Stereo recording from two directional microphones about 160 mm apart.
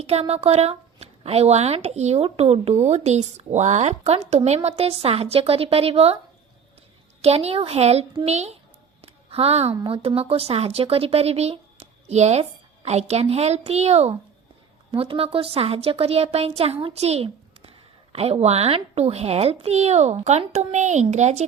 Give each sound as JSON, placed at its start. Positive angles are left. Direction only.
{"t": 0.0, "sound": "speech", "side_deg": -40}
{"t": 7.2, "sound": "speech", "side_deg": -40}